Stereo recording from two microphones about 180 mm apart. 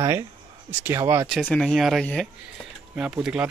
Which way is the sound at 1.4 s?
5° left (ahead or behind).